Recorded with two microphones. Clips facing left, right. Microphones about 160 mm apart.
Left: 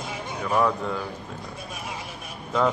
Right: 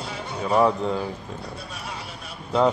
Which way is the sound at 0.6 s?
20° right (ahead or behind).